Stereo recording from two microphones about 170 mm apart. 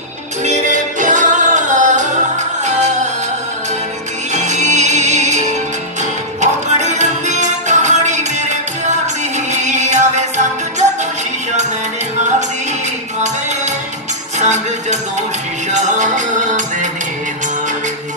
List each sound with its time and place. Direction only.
0.4 s music: 45° right (ahead or behind)
4.3 s music: 45° right (ahead or behind)
14.4 s music: 45° right (ahead or behind)